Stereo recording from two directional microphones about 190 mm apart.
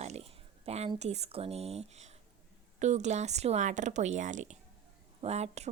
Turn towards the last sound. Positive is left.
turn(degrees=-35)  # may be behind; listen again after turning